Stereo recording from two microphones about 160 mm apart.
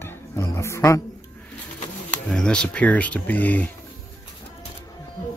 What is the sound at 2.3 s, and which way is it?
Speech, 5° left (ahead or behind).